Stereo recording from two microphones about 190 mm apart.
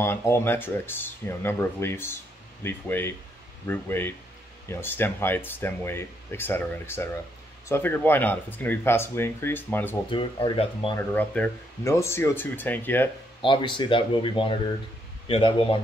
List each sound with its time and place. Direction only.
0.0 s speech: 15° left (ahead or behind)
10.1 s speech: 25° left (ahead or behind)
11.0 s speech: 10° left (ahead or behind)
13.4 s speech: 25° left (ahead or behind)